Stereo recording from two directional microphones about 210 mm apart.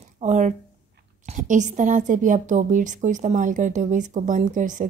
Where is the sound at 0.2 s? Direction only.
35° right (ahead or behind).